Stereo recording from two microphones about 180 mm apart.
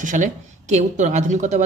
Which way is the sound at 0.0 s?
45° right (ahead or behind).